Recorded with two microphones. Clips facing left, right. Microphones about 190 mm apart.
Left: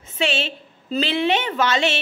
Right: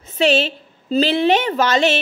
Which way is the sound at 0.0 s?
40° right (ahead or behind).